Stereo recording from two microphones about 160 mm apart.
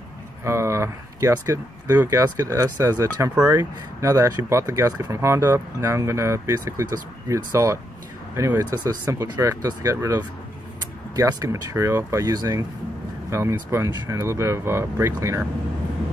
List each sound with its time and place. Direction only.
0.4 s speech: 15° right (ahead or behind)